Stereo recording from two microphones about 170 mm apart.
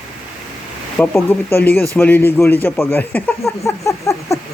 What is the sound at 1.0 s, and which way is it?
Speech, 10° left (ahead or behind).